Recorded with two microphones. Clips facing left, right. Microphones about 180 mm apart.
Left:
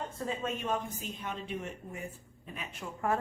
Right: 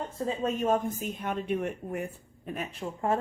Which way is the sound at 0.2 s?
35° right (ahead or behind).